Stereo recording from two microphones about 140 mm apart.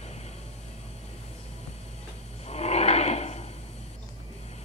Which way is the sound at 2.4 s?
50° left (ahead or behind).